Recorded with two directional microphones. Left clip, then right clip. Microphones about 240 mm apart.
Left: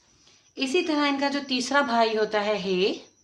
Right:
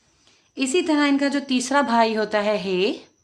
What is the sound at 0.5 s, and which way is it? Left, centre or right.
A woman's voice, right.